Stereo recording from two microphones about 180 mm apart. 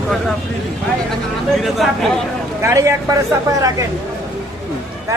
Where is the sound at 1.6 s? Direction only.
Centre (ahead or behind).